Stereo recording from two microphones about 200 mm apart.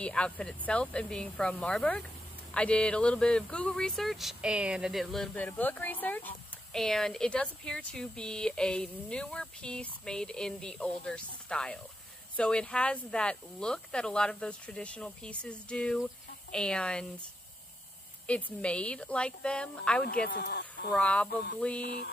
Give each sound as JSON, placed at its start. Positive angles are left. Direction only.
{"t": 0.0, "sound": "speech", "side_deg": 5}
{"t": 18.2, "sound": "speech", "side_deg": 5}
{"t": 20.2, "sound": "speech", "side_deg": 55}
{"t": 20.9, "sound": "speech", "side_deg": 5}
{"t": 21.5, "sound": "a sound", "side_deg": 5}
{"t": 21.8, "sound": "music", "side_deg": 55}